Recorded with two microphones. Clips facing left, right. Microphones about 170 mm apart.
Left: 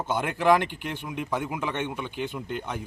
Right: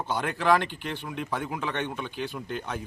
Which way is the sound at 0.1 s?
15° left (ahead or behind).